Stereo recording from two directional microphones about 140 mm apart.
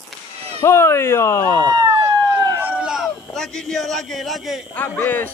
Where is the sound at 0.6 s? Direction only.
20° left (ahead or behind).